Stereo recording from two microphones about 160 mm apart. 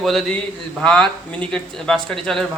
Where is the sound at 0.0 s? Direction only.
Centre (ahead or behind).